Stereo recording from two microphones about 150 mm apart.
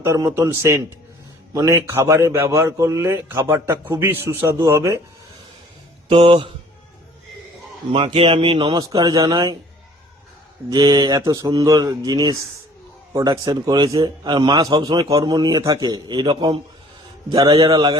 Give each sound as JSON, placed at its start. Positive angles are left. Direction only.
{"t": 0.0, "sound": "a man's voice", "side_deg": -20}
{"t": 6.1, "sound": "speech", "side_deg": -35}
{"t": 7.9, "sound": "speech", "side_deg": -35}
{"t": 8.8, "sound": "a man's voice", "side_deg": -25}
{"t": 10.7, "sound": "a man's voice", "side_deg": -25}
{"t": 17.3, "sound": "a man's voice", "side_deg": -25}